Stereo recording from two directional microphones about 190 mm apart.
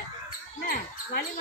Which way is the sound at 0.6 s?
50° left (ahead or behind).